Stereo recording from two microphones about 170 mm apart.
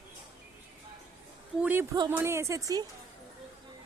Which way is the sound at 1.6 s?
10° right (ahead or behind).